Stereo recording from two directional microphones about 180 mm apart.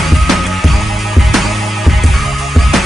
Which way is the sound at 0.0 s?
Centre (ahead or behind).